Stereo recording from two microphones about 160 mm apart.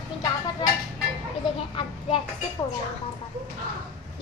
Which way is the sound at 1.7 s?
35° left (ahead or behind).